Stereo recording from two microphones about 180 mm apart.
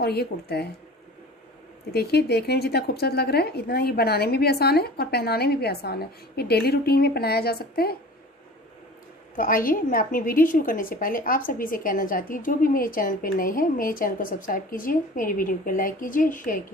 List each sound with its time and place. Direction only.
0.0 s a woman's voice: 65° left (ahead or behind)
1.9 s a woman's voice: 60° left (ahead or behind)
9.3 s a woman's voice: 50° left (ahead or behind)